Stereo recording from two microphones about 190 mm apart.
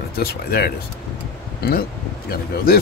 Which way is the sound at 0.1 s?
55° left (ahead or behind).